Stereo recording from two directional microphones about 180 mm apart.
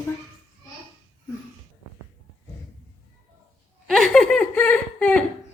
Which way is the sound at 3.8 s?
5° left (ahead or behind).